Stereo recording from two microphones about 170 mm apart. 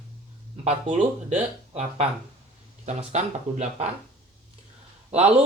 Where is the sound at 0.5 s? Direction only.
40° right (ahead or behind).